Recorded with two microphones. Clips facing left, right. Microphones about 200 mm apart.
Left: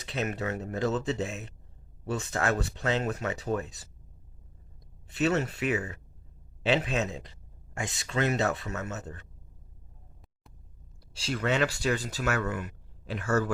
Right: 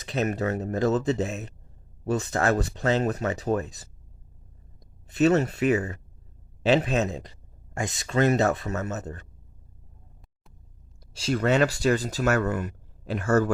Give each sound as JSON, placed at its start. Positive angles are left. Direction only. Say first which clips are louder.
{"t": 0.0, "sound": "speech", "louder": "right 5 dB", "side_deg": -40}
{"t": 5.0, "sound": "speech", "louder": "right 6 dB", "side_deg": -40}
{"t": 11.2, "sound": "speech", "louder": "right 6 dB", "side_deg": -45}